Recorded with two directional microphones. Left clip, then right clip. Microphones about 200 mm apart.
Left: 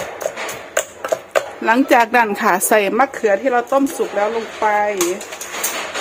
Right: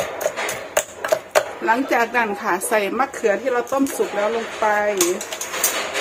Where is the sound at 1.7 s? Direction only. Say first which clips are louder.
Left 9 dB; 55° left (ahead or behind).